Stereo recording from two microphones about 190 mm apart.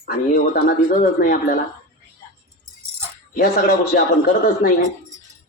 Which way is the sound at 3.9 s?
45° left (ahead or behind).